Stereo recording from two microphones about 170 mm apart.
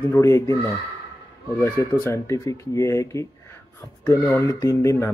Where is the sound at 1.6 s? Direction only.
15° left (ahead or behind).